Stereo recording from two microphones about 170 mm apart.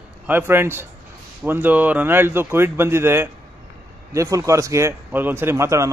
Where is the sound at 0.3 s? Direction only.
15° right (ahead or behind).